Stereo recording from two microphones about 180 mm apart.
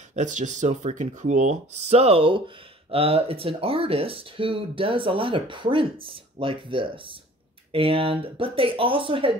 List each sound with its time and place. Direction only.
0.1 s speech: 45° right (ahead or behind)